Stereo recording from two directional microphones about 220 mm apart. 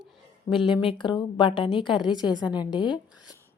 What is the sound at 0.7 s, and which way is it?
A woman's voice, 25° left (ahead or behind).